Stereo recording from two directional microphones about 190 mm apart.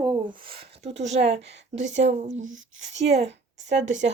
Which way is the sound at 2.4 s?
90° right.